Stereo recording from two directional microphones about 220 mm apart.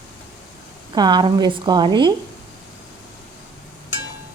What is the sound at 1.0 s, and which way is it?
A woman's voice, 20° right (ahead or behind).